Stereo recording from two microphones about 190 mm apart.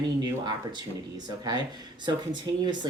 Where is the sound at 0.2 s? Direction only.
20° right (ahead or behind).